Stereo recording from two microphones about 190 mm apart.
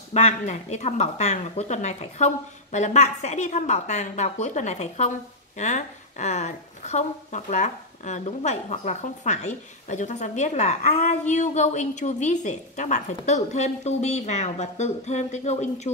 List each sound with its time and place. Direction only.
0.1 s a woman's voice: 35° left (ahead or behind)